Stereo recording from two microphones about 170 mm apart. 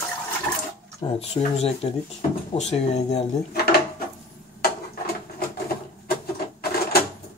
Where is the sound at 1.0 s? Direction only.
35° left (ahead or behind).